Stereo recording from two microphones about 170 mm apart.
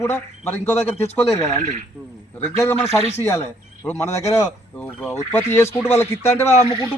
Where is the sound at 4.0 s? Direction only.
15° left (ahead or behind).